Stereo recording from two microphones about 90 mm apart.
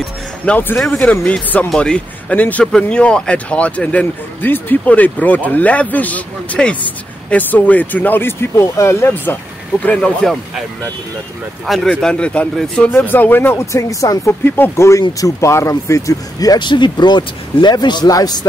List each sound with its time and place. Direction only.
0.5 s speech: 20° left (ahead or behind)
9.8 s speech: 10° left (ahead or behind)
11.6 s speech: centre (ahead or behind)
12.9 s speech: 20° left (ahead or behind)
13.7 s speech: 40° left (ahead or behind)
14.4 s speech: 25° left (ahead or behind); by 18.5 s 45° left (ahead or behind)